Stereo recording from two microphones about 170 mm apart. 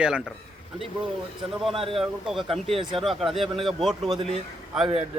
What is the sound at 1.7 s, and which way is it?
Speech, 35° right (ahead or behind).